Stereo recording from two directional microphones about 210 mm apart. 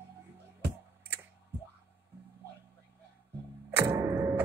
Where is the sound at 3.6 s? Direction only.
10° right (ahead or behind).